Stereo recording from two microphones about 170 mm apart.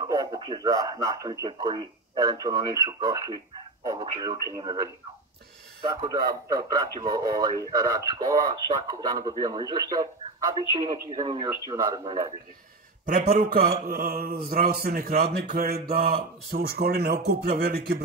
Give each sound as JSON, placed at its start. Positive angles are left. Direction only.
{"t": 0.0, "sound": "speech", "side_deg": -20}
{"t": 6.0, "sound": "speech", "side_deg": -25}
{"t": 13.0, "sound": "mantra", "side_deg": -65}
{"t": 15.9, "sound": "a man's voice", "side_deg": -60}